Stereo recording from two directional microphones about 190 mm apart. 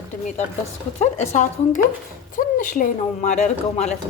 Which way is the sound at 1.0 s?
40° left (ahead or behind).